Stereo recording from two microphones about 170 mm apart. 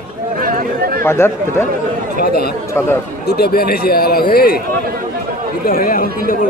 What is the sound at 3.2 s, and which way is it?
A man's voice, 65° left (ahead or behind).